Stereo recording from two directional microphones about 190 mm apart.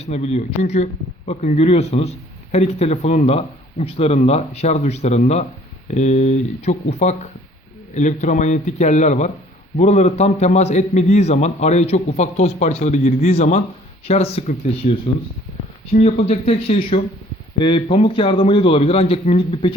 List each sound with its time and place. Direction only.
0.0 s a man's voice: 35° left (ahead or behind)